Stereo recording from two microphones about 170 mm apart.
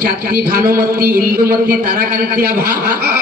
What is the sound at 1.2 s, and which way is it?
A man's voice, 60° right (ahead or behind).